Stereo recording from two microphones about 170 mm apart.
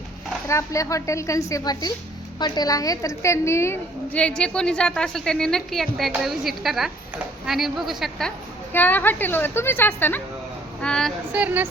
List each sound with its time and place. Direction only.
0.4 s a woman's voice: 20° left (ahead or behind); by 8.3 s centre (ahead or behind)
8.7 s a woman's voice: 10° left (ahead or behind)
11.3 s speech: 10° right (ahead or behind)